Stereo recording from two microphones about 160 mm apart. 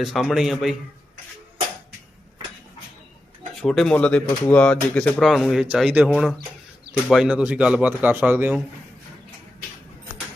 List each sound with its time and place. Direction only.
0.0 s speech: centre (ahead or behind)
3.6 s speech: 5° left (ahead or behind)
5.2 s speech: centre (ahead or behind)